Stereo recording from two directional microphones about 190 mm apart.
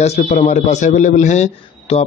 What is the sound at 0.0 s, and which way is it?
A man's voice, 35° left (ahead or behind).